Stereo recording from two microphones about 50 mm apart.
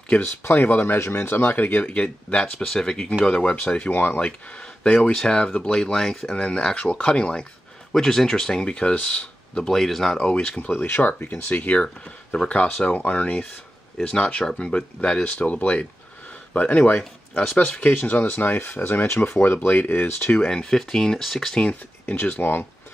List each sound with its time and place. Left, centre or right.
0.2 s speech: left
0.6 s speech: left
0.9 s speech: left
1.8 s speech: left
2.6 s speech: centre
3.9 s speech: left
4.2 s speech: left
7.9 s speech: centre; by 9.2 s left
9.6 s speech: centre
10.1 s speech: centre
10.5 s speech: left
14.0 s speech: centre; by 20.3 s left
20.3 s speech: centre
22.1 s speech: left